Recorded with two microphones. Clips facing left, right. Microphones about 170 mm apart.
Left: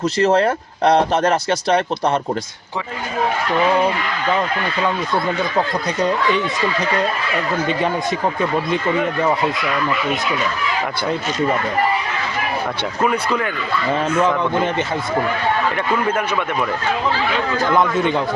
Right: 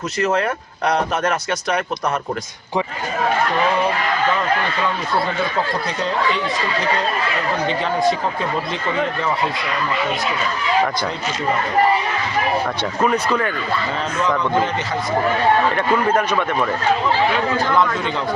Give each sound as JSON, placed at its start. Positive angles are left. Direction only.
{"t": 0.2, "sound": "speech", "side_deg": 30}
{"t": 13.0, "sound": "speech", "side_deg": 10}